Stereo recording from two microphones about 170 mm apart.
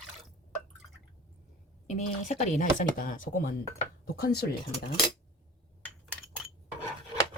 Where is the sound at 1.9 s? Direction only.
45° left (ahead or behind).